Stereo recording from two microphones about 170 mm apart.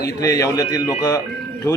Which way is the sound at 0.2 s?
20° left (ahead or behind).